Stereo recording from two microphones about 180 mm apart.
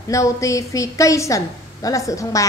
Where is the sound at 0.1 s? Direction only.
20° left (ahead or behind).